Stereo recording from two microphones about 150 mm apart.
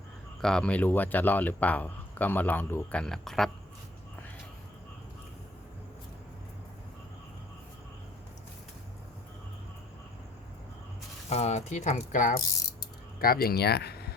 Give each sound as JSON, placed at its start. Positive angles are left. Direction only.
{"t": 0.4, "sound": "speech", "side_deg": 5}
{"t": 11.3, "sound": "speech", "side_deg": 45}
{"t": 13.1, "sound": "speech", "side_deg": 80}